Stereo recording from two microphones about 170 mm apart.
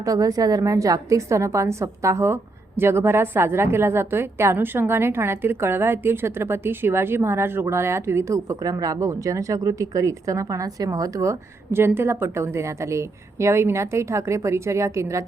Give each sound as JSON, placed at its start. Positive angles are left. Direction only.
{"t": 0.0, "sound": "a woman's voice", "side_deg": -20}